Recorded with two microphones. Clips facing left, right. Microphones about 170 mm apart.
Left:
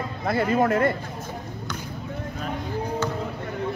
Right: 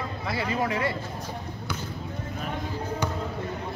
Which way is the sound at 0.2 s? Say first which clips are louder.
Left 7 dB; 50° left (ahead or behind).